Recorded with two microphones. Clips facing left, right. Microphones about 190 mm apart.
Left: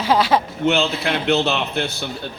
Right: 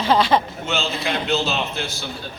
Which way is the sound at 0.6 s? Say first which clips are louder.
Left 6 dB; 60° left (ahead or behind).